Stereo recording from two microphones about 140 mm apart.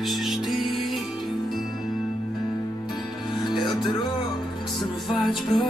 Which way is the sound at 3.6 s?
30° left (ahead or behind).